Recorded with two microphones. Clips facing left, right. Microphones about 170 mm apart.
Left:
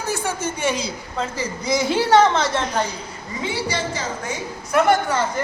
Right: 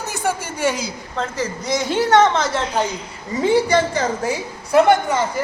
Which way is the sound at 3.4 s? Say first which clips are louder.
Right 9 dB; 50° right (ahead or behind).